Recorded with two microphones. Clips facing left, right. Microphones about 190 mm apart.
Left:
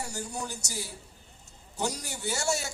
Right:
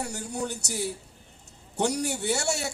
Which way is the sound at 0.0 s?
65° right (ahead or behind).